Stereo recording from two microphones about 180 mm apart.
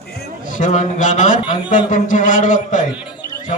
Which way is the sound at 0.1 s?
55° left (ahead or behind).